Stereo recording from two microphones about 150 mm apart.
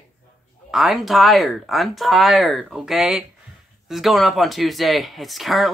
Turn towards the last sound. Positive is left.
turn(degrees=0)  # may be behind; listen again after turning